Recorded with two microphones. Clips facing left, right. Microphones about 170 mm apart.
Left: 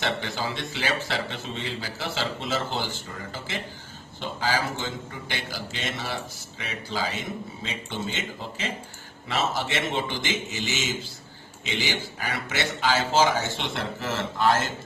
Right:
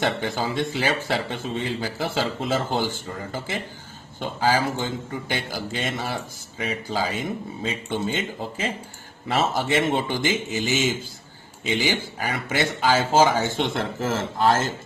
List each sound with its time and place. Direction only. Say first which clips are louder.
0.0 s a man's voice: right 4 dB; 50° right (ahead or behind)
4.2 s a man's voice: right 5 dB; 50° right (ahead or behind)
12.3 s a man's voice: right 4 dB; 50° right (ahead or behind)